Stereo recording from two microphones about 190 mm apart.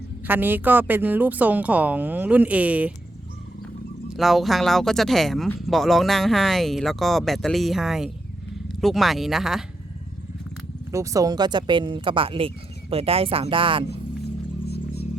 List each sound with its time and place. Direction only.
0.3 s speech: 10° right (ahead or behind)
4.2 s speech: centre (ahead or behind)
10.9 s speech: 15° right (ahead or behind)